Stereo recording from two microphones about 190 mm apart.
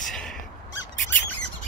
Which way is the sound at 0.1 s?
5° left (ahead or behind).